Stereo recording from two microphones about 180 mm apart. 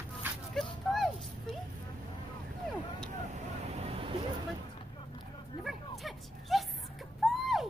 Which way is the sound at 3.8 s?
30° right (ahead or behind).